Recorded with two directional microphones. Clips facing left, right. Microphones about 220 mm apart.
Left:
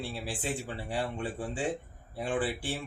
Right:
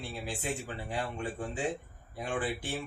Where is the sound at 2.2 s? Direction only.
30° left (ahead or behind).